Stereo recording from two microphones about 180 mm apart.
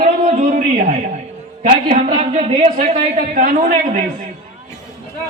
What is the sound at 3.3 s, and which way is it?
Speech, 50° right (ahead or behind).